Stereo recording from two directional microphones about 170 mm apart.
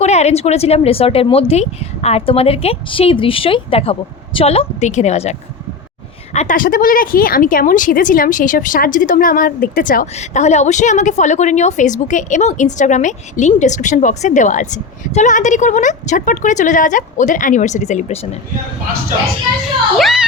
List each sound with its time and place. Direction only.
0.0 s speech: 40° left (ahead or behind)
20.0 s speech: centre (ahead or behind)